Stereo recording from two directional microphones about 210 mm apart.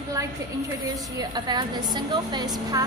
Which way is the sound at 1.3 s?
20° right (ahead or behind).